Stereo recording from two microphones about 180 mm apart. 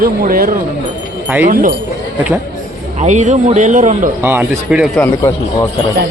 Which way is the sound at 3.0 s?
45° right (ahead or behind).